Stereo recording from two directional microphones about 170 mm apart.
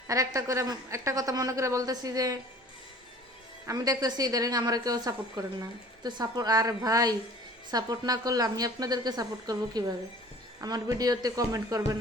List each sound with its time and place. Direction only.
0.1 s a woman's voice: 20° right (ahead or behind)
3.7 s a woman's voice: 20° right (ahead or behind)